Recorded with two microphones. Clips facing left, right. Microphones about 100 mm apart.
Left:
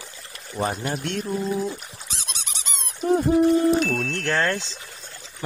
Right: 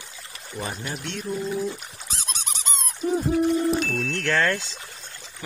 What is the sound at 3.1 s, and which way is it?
Speech, 65° left (ahead or behind).